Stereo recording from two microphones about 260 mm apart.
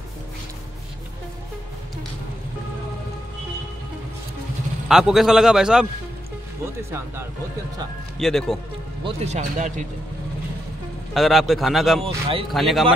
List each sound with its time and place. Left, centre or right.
4.8 s a man's voice: centre
8.2 s a man's voice: centre
9.0 s speech: right
11.1 s a man's voice: centre
12.0 s speech: right
12.5 s a man's voice: centre